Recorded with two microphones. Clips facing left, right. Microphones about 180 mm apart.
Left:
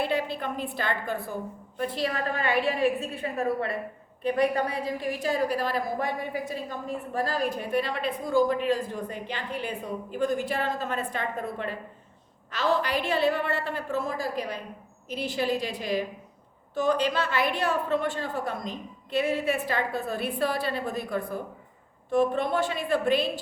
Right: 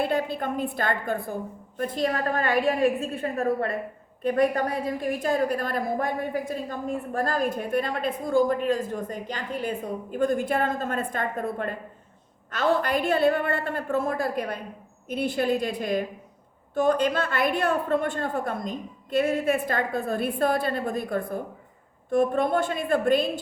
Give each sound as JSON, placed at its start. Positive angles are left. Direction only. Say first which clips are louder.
{"t": 0.0, "sound": "a woman's voice", "louder": "right 2 dB", "side_deg": -45}